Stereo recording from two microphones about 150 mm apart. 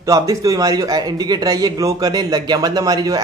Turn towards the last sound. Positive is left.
turn(degrees=-25)  # may be behind; listen again after turning